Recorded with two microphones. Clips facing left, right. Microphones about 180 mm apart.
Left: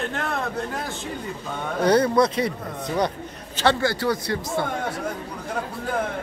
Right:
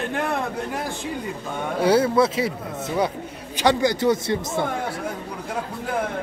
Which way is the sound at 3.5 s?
15° right (ahead or behind).